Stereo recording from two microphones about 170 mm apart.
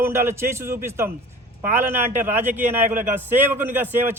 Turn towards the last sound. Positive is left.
turn(degrees=-10)  # may be behind; listen again after turning